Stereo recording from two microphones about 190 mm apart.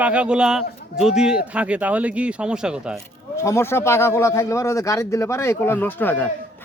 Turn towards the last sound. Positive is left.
turn(degrees=10)  # may be behind; listen again after turning